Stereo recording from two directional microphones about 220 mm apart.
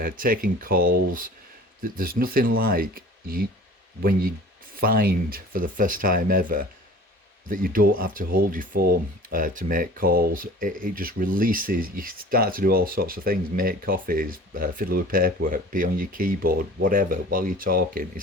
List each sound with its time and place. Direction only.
0.0 s speech: 40° right (ahead or behind)